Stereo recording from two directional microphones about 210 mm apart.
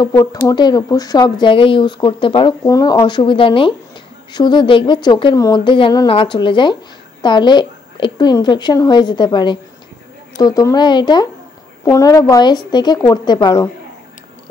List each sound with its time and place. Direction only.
0.0 s a woman's voice: 20° left (ahead or behind)